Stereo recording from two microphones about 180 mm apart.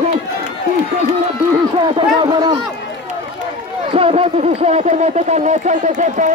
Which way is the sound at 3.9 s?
30° right (ahead or behind).